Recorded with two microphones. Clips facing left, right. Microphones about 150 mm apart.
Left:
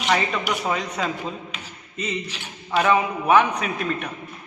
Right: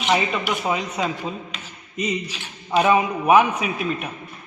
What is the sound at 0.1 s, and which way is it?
A man's voice, 10° right (ahead or behind).